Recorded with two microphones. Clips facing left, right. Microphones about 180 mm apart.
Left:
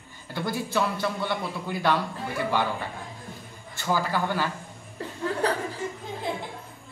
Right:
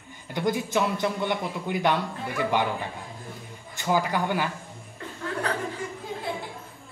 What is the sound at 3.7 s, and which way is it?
Speech, 15° right (ahead or behind).